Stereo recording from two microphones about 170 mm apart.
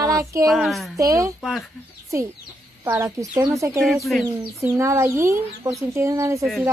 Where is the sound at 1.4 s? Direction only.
Centre (ahead or behind).